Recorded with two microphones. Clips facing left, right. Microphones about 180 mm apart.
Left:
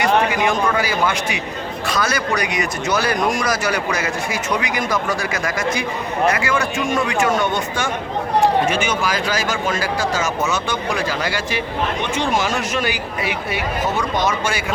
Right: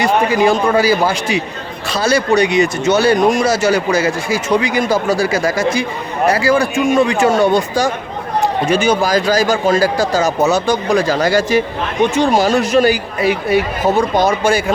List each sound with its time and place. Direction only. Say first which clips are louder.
0.0 s a man's voice: right 4 dB; 30° right (ahead or behind)